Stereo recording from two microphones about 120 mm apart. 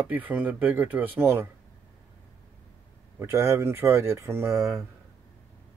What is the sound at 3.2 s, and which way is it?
Speech, 20° right (ahead or behind).